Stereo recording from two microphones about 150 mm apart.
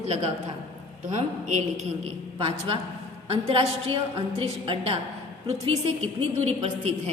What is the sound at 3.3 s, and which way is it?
A woman's voice, 40° right (ahead or behind).